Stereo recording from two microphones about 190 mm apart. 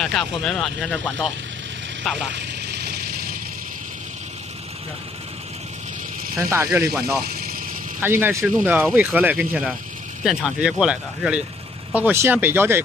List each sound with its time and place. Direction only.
0.0 s speech: centre (ahead or behind)
2.7 s a sound: 55° right (ahead or behind)
6.3 s speech: 15° right (ahead or behind)
8.0 s speech: 10° right (ahead or behind)